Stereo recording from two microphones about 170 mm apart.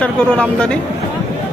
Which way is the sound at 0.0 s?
5° left (ahead or behind).